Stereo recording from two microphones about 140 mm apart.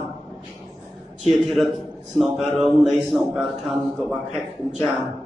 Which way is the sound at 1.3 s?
Centre (ahead or behind).